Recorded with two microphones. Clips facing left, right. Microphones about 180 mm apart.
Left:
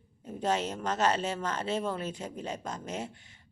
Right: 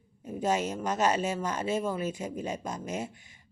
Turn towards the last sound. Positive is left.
turn(degrees=-10)  # may be behind; listen again after turning